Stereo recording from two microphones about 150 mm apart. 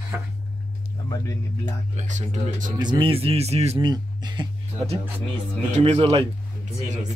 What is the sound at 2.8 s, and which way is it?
Speech, 30° right (ahead or behind).